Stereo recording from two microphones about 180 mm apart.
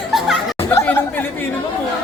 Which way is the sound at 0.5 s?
15° left (ahead or behind).